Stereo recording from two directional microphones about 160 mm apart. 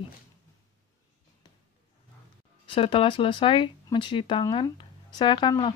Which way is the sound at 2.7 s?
35° left (ahead or behind).